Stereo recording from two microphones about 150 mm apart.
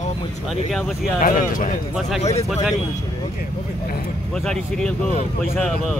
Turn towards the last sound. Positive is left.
turn(degrees=5)  # may be behind; listen again after turning